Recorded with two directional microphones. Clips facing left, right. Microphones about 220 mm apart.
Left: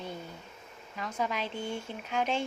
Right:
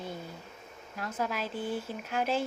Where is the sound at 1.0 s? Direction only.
5° right (ahead or behind).